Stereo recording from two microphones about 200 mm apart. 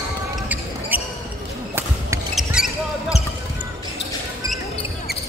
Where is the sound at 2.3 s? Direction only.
Centre (ahead or behind).